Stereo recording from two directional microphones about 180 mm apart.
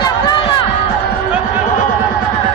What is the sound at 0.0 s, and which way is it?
Music, 25° left (ahead or behind).